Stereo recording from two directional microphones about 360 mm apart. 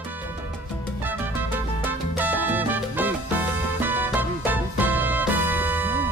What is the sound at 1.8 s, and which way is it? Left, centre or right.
Salsa music, centre.